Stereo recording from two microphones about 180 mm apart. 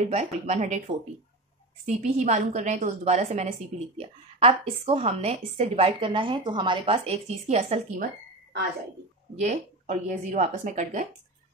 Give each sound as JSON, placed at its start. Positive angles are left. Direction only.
{"t": 0.1, "sound": "a woman's voice", "side_deg": -40}
{"t": 1.9, "sound": "a woman's voice", "side_deg": -40}
{"t": 9.4, "sound": "speech", "side_deg": -45}